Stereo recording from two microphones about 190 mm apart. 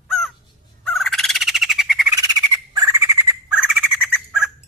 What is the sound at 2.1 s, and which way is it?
Squawk, 20° right (ahead or behind).